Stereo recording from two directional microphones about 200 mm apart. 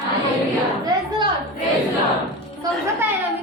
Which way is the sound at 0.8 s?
20° right (ahead or behind).